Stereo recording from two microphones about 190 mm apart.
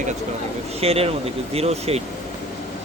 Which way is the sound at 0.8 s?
30° right (ahead or behind).